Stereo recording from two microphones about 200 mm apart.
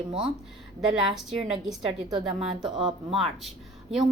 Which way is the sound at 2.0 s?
20° right (ahead or behind).